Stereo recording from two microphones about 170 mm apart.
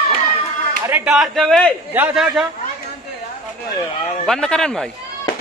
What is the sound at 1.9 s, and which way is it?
Speech, 5° right (ahead or behind).